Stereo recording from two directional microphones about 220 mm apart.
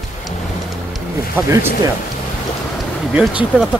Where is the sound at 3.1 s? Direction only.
5° right (ahead or behind).